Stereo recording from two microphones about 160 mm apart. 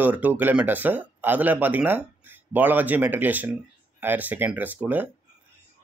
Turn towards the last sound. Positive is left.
turn(degrees=-10)  # may be behind; listen again after turning